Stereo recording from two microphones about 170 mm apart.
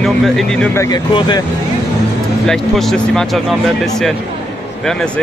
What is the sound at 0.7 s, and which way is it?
Speech, 25° left (ahead or behind).